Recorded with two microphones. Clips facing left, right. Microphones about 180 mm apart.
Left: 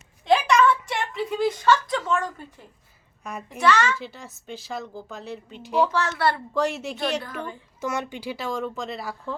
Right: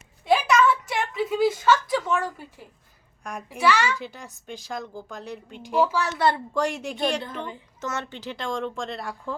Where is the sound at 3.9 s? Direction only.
Centre (ahead or behind); by 6.4 s 20° right (ahead or behind).